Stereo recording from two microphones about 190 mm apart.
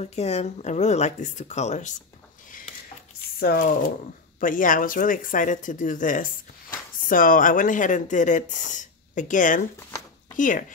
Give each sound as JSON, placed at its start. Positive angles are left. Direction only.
{"t": 0.0, "sound": "speech", "side_deg": 35}
{"t": 3.3, "sound": "speech", "side_deg": 50}